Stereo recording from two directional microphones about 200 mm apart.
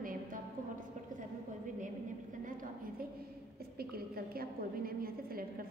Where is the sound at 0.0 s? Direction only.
45° right (ahead or behind).